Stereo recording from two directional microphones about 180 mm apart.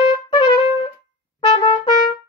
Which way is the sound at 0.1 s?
25° left (ahead or behind).